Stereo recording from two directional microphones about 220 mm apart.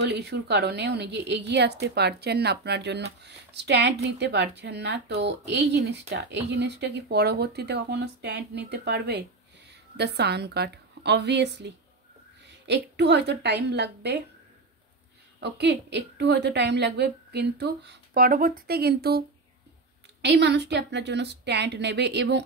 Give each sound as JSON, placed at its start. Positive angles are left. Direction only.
{"t": 0.0, "sound": "a woman's voice", "side_deg": -50}
{"t": 15.4, "sound": "speech", "side_deg": -50}